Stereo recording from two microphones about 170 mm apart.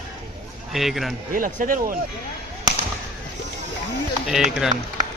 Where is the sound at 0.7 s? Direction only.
Centre (ahead or behind).